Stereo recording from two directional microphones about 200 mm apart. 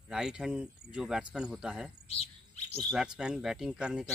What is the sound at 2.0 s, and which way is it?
Bird, 30° left (ahead or behind).